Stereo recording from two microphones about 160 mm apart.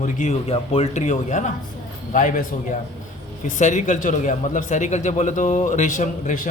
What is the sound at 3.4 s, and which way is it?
A man's voice, 50° left (ahead or behind).